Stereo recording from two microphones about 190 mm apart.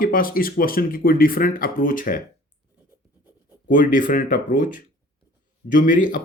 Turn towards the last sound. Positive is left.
turn(degrees=45)  # may be behind; listen again after turning